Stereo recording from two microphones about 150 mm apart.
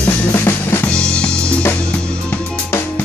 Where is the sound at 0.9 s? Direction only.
5° left (ahead or behind).